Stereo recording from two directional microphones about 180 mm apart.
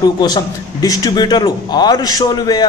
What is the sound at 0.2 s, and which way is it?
A man's voice, 20° left (ahead or behind).